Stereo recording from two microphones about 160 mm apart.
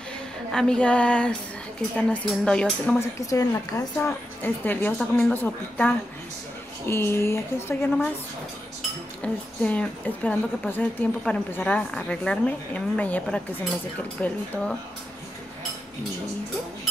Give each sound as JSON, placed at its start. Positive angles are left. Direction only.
{"t": 0.5, "sound": "speech", "side_deg": 5}
{"t": 3.0, "sound": "a woman's voice", "side_deg": 20}
{"t": 9.2, "sound": "a woman's voice", "side_deg": 5}